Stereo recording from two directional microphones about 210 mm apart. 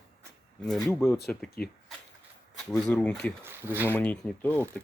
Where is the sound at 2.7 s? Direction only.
5° left (ahead or behind).